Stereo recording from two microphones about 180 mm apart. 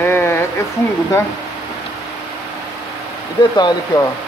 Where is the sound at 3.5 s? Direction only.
25° left (ahead or behind).